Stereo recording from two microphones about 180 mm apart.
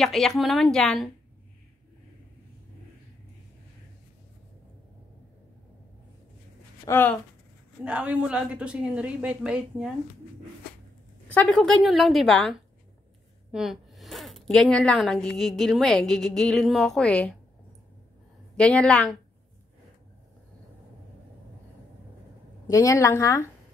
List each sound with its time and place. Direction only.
0.0 s a woman's voice: centre (ahead or behind)
6.9 s a woman's voice: 10° left (ahead or behind)
7.8 s a woman's voice: 5° right (ahead or behind)
11.2 s a woman's voice: 5° left (ahead or behind)
18.6 s a woman's voice: 5° left (ahead or behind)
22.7 s a woman's voice: 15° left (ahead or behind)